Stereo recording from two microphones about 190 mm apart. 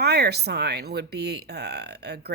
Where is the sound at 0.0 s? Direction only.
60° right (ahead or behind).